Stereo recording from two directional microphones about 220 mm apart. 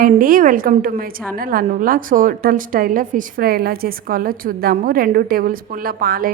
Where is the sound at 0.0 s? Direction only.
40° right (ahead or behind).